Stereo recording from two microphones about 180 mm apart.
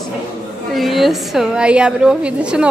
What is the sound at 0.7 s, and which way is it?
A woman's voice, centre (ahead or behind).